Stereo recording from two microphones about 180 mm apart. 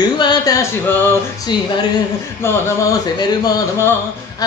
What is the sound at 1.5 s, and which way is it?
Speech, 25° left (ahead or behind).